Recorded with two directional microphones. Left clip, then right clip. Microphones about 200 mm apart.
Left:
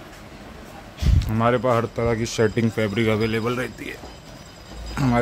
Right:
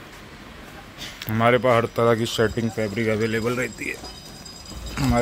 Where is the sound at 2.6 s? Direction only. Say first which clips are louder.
Left 3 dB; 25° left (ahead or behind).